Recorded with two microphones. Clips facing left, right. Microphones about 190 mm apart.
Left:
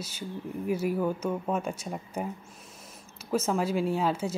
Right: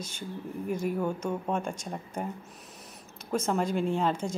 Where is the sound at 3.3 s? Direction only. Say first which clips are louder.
Left 1 dB; 5° left (ahead or behind).